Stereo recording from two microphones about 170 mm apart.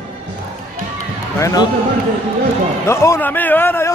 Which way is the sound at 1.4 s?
20° left (ahead or behind).